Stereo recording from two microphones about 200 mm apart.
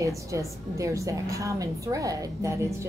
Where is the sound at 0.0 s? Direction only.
15° right (ahead or behind).